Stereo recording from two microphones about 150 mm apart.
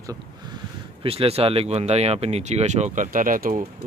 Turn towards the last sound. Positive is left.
turn(degrees=-65)  # may be behind; listen again after turning